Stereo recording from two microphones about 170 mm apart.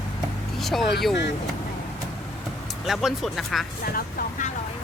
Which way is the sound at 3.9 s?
50° left (ahead or behind).